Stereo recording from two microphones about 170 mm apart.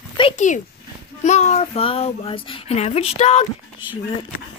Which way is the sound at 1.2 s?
40° left (ahead or behind).